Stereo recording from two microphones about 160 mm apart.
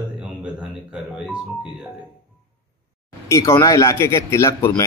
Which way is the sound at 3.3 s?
20° left (ahead or behind).